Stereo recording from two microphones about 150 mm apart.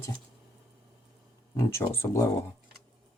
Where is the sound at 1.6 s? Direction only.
20° left (ahead or behind).